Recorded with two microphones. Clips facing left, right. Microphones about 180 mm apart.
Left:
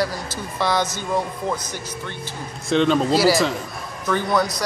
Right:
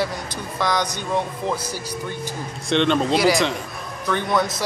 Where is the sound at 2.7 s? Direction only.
5° left (ahead or behind).